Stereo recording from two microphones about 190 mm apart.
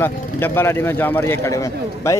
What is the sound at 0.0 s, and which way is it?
Speech, 10° left (ahead or behind).